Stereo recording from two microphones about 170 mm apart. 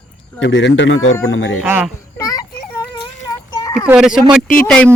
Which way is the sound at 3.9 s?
5° right (ahead or behind).